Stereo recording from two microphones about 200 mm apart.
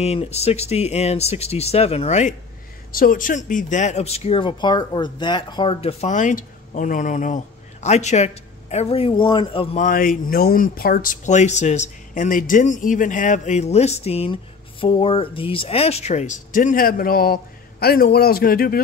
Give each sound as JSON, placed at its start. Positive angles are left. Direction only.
{"t": 0.0, "sound": "speech", "side_deg": 30}
{"t": 2.9, "sound": "speech", "side_deg": 45}
{"t": 9.8, "sound": "speech", "side_deg": 45}